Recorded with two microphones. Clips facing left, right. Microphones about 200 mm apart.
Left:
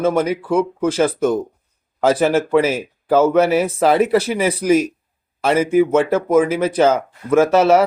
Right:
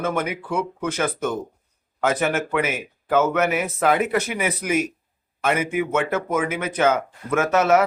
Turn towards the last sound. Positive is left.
turn(degrees=30)  # may be behind; listen again after turning